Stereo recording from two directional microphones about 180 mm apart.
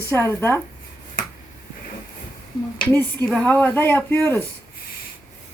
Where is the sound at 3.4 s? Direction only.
10° left (ahead or behind).